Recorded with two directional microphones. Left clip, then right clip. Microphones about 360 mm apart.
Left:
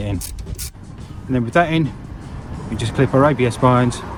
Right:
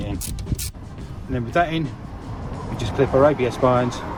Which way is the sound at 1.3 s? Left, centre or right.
Centre.